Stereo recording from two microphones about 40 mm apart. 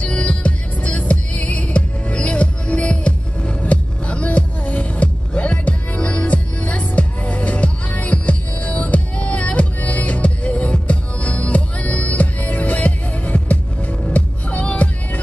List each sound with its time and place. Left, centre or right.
0.0 s music: left